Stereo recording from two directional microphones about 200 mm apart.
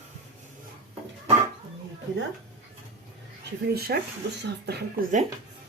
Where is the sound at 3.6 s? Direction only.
50° right (ahead or behind).